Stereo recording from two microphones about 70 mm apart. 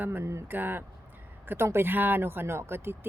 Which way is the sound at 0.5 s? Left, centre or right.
Right.